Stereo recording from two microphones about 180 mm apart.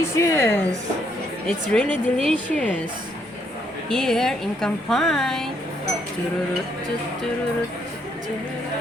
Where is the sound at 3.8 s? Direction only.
5° left (ahead or behind).